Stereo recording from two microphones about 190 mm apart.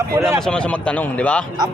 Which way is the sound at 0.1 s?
15° right (ahead or behind).